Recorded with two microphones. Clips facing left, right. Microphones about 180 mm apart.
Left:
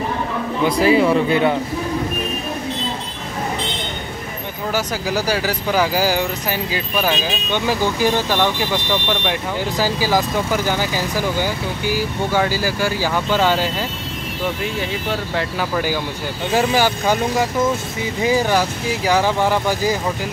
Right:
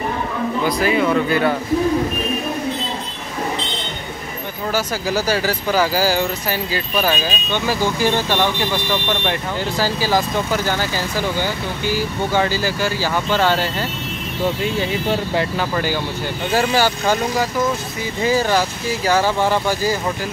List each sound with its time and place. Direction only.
0.7 s speech: 30° left (ahead or behind)
4.7 s speech: 15° left (ahead or behind)
16.5 s speech: 15° left (ahead or behind)